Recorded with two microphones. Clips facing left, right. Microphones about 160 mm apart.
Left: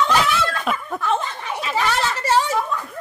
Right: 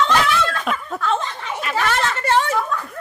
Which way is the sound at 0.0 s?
5° left (ahead or behind).